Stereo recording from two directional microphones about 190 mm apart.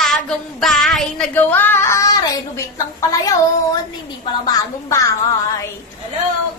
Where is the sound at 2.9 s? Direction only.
15° left (ahead or behind).